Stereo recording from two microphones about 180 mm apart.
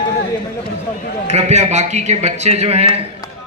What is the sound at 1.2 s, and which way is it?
A man's voice, 40° right (ahead or behind).